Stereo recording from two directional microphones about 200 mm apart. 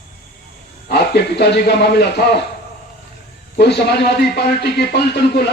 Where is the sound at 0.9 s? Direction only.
55° left (ahead or behind).